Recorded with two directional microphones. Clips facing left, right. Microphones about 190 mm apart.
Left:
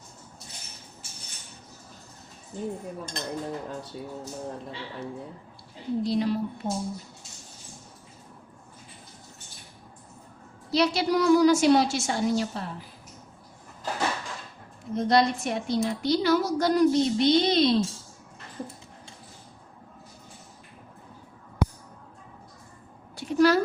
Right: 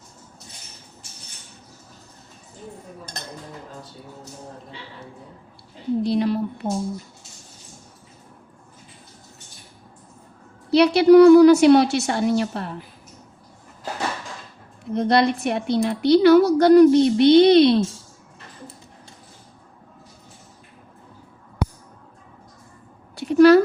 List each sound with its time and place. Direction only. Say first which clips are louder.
6.0 s a woman's voice: right 4 dB; 65° right (ahead or behind)
10.7 s a woman's voice: right 11 dB; 65° right (ahead or behind)
14.9 s a woman's voice: right 4 dB; 65° right (ahead or behind)
23.1 s a sound: right 9 dB; 65° right (ahead or behind)